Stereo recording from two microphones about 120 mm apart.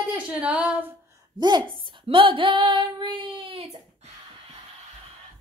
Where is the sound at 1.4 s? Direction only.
40° right (ahead or behind).